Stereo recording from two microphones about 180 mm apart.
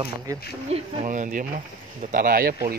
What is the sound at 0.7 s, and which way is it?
Speech, 45° right (ahead or behind).